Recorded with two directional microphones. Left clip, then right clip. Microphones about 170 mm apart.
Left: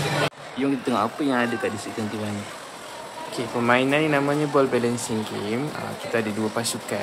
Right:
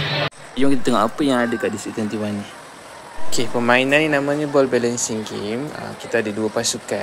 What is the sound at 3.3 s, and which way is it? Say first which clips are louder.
Speech: right 4 dB; 30° right (ahead or behind).